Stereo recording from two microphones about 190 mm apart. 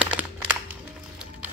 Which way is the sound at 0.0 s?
10° right (ahead or behind).